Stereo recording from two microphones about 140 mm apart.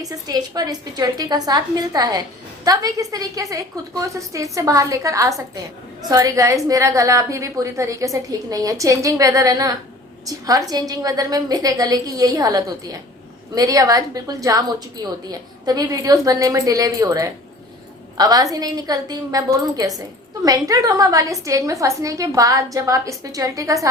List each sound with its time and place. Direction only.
0.0 s a woman's voice: 25° right (ahead or behind)